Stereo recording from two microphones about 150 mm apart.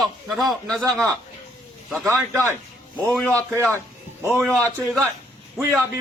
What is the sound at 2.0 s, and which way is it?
Speech, 20° right (ahead or behind).